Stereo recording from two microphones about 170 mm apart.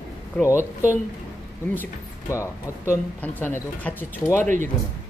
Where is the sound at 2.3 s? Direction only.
15° left (ahead or behind).